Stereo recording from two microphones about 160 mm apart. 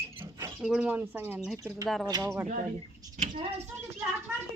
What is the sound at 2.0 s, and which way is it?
Speech, 25° right (ahead or behind).